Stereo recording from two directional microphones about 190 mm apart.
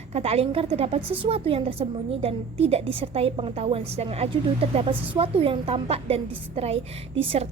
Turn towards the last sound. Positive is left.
turn(degrees=-30)  # may be behind; listen again after turning